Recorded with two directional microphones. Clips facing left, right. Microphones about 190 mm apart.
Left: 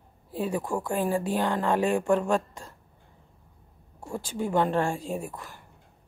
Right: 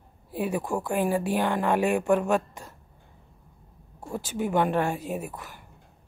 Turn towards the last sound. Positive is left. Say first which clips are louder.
# even
turn(degrees=-5)  # may be behind; listen again after turning